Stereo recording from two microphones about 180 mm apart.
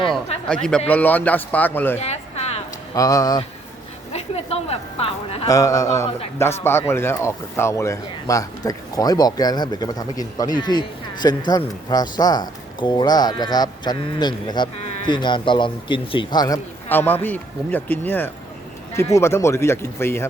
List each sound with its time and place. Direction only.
0.4 s a man's voice: 5° left (ahead or behind)
2.0 s a sound: 35° left (ahead or behind)
2.9 s speech: 20° left (ahead or behind)
4.1 s a woman's voice: 35° left (ahead or behind)
5.5 s speech: 20° left (ahead or behind)
16.9 s speech: 10° left (ahead or behind)